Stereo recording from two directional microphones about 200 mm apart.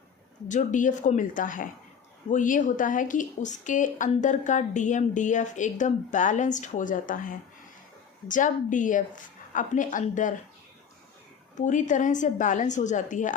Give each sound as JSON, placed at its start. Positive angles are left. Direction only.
{"t": 0.4, "sound": "a woman's voice", "side_deg": 40}
{"t": 11.5, "sound": "a woman's voice", "side_deg": 40}